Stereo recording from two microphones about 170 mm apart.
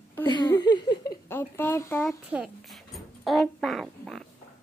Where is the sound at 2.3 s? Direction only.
Centre (ahead or behind).